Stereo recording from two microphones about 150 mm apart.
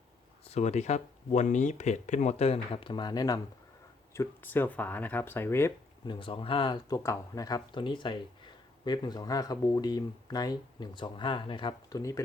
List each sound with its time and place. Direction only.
0.5 s speech: 50° left (ahead or behind); by 5.7 s 15° left (ahead or behind)
6.1 s speech: 35° left (ahead or behind)